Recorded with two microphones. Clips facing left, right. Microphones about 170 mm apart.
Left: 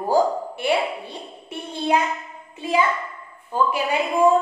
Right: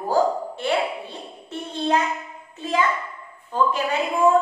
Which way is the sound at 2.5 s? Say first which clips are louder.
Left 3 dB; 10° left (ahead or behind).